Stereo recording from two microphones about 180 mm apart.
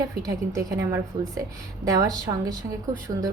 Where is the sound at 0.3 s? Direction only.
15° right (ahead or behind).